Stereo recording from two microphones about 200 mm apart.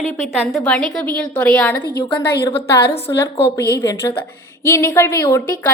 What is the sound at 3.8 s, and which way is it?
Speech, 15° left (ahead or behind).